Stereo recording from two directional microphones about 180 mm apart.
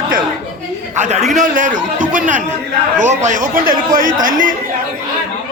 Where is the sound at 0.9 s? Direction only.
40° right (ahead or behind).